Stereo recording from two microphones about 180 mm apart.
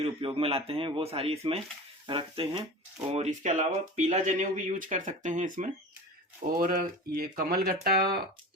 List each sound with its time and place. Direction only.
0.0 s speech: 30° right (ahead or behind)
3.2 s speech: 40° right (ahead or behind); by 8.2 s 60° right (ahead or behind)